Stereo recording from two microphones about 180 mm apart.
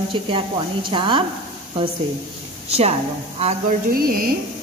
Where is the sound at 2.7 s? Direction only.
35° right (ahead or behind).